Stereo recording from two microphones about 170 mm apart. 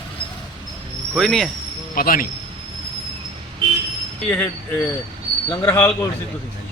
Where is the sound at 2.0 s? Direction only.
60° left (ahead or behind).